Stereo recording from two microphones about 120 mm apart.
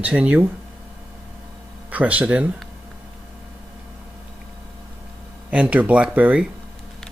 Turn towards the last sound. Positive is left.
turn(degrees=-10)  # may be behind; listen again after turning